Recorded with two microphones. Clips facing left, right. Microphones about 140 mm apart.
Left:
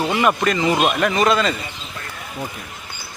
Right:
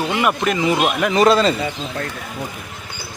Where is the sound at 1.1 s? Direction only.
30° right (ahead or behind).